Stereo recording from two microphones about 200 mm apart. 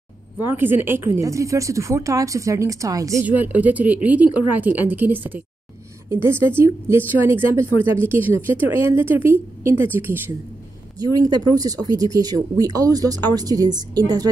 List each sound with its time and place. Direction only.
0.4 s a woman's voice: 10° right (ahead or behind)